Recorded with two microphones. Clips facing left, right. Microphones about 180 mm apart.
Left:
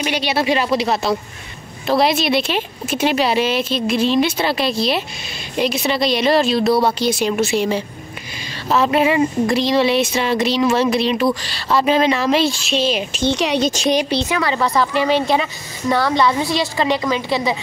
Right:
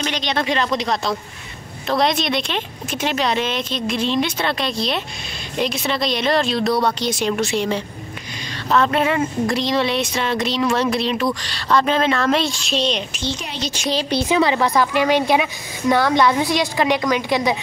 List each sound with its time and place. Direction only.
0.0 s speech: 10° left (ahead or behind)
13.2 s a woman's voice: 70° left (ahead or behind)
14.2 s a woman's voice: 15° right (ahead or behind); by 16.4 s centre (ahead or behind)
16.7 s a woman's voice: 10° right (ahead or behind)